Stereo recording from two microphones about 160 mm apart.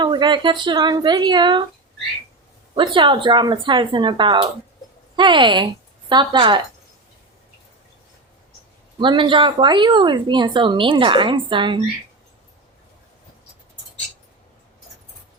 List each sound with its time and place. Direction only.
0.0 s speech: 30° right (ahead or behind)
2.7 s speech: 30° right (ahead or behind)
9.0 s speech: 30° right (ahead or behind)